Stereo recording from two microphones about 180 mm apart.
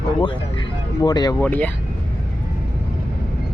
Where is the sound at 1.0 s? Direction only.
20° left (ahead or behind).